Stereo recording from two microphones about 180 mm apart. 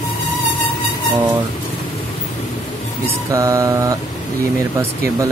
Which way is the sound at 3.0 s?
15° right (ahead or behind).